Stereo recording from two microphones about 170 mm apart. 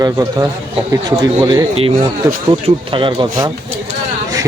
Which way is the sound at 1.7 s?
35° right (ahead or behind).